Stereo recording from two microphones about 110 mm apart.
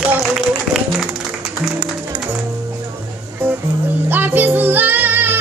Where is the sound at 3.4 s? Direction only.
20° right (ahead or behind).